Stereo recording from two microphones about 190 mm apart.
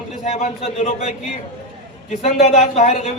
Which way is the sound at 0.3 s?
35° left (ahead or behind).